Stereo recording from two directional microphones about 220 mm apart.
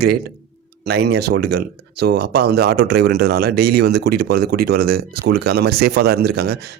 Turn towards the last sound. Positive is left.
turn(degrees=-45)  # may be behind; listen again after turning